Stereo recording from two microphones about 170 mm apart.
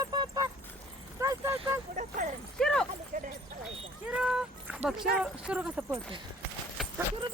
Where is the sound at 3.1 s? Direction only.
50° right (ahead or behind).